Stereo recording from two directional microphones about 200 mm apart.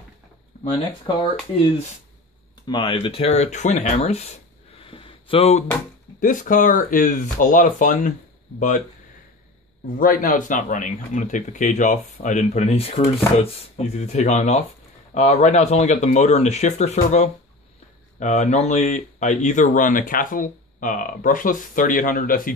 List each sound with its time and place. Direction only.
0.7 s speech: 20° left (ahead or behind)
2.6 s speech: 25° left (ahead or behind)
4.7 s a sound: 25° left (ahead or behind)
6.1 s speech: 40° left (ahead or behind)
9.9 s speech: 45° left (ahead or behind)